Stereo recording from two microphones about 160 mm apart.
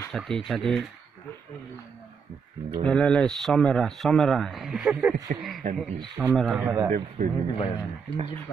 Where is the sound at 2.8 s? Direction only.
5° left (ahead or behind).